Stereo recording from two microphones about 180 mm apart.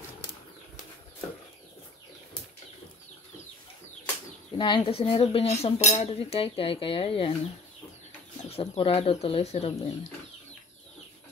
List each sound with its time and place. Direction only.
4.6 s cutlery: 25° left (ahead or behind)
8.5 s cutlery: 30° left (ahead or behind)